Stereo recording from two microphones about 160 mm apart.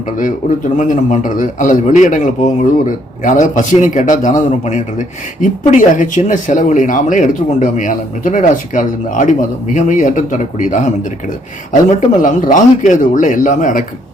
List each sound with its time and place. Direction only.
0.8 s a man's voice: 50° left (ahead or behind)